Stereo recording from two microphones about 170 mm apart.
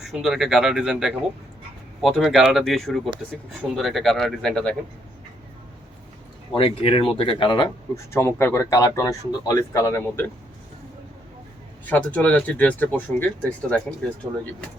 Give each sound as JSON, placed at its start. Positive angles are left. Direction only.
{"t": 0.0, "sound": "speech", "side_deg": 0}
{"t": 6.5, "sound": "speech", "side_deg": 35}
{"t": 11.9, "sound": "speech", "side_deg": 10}